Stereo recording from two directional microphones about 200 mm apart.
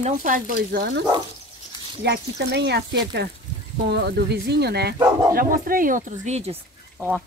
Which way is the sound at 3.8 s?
55° right (ahead or behind).